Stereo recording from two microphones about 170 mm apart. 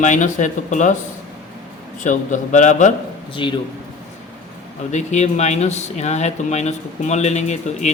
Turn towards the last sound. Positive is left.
turn(degrees=40)  # may be behind; listen again after turning